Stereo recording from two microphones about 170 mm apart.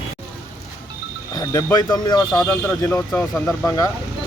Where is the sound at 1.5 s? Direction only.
20° left (ahead or behind).